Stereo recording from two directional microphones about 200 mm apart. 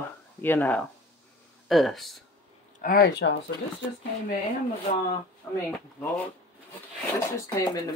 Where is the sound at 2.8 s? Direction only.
50° left (ahead or behind).